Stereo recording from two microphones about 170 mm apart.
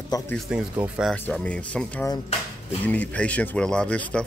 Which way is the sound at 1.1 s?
5° left (ahead or behind).